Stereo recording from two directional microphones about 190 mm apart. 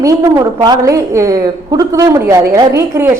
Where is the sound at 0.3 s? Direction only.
20° right (ahead or behind).